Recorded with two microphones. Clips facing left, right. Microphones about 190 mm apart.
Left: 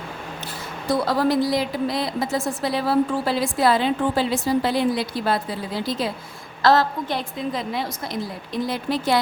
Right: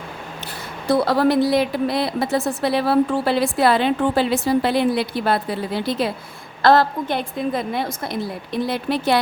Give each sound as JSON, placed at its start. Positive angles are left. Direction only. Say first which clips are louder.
{"t": 0.9, "sound": "a woman's voice", "louder": "right 3 dB", "side_deg": -65}